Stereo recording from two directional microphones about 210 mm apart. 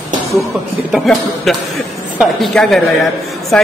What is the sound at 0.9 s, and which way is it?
A man's voice, centre (ahead or behind).